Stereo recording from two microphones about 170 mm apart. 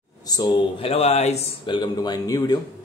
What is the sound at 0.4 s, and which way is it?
Speech, 35° left (ahead or behind).